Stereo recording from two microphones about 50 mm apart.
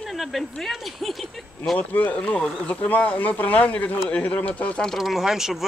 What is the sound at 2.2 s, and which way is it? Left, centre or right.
Speech, left.